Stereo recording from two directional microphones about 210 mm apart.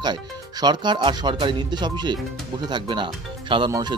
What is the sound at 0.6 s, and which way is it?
Speech, 20° right (ahead or behind).